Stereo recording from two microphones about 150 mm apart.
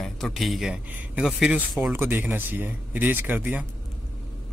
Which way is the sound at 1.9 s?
15° right (ahead or behind).